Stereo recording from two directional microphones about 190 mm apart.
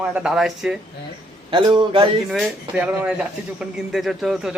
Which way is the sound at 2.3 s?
Centre (ahead or behind).